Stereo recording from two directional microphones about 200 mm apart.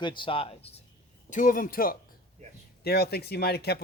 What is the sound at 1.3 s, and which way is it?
Speech, 40° left (ahead or behind).